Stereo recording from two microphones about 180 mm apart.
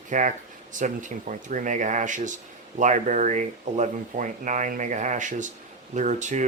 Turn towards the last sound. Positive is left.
turn(degrees=-45)  # may be behind; listen again after turning